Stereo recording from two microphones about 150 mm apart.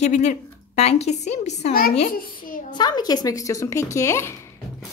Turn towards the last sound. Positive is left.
turn(degrees=15)  # may be behind; listen again after turning